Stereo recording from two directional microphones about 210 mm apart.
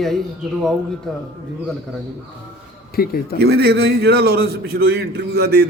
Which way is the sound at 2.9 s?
45° left (ahead or behind).